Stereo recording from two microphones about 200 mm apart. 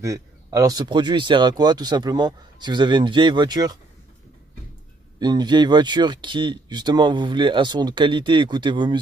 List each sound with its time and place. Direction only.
0.0 s speech: 15° right (ahead or behind)
5.2 s speech: 20° right (ahead or behind)